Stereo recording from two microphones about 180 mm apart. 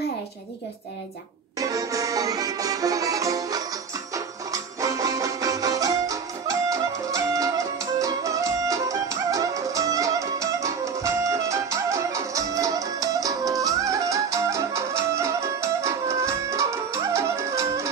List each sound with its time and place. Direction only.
1.6 s music: 20° right (ahead or behind)